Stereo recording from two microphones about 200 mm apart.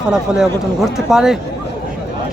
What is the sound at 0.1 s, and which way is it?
Speech, centre (ahead or behind).